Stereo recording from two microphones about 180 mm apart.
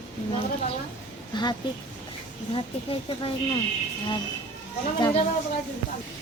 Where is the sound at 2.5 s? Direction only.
30° left (ahead or behind).